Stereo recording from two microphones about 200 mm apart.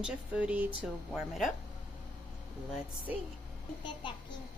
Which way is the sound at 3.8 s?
25° left (ahead or behind).